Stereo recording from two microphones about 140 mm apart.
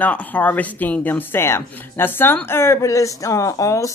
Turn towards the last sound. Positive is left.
turn(degrees=25)  # may be behind; listen again after turning